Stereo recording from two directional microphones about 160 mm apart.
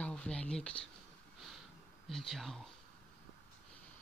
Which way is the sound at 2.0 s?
Centre (ahead or behind).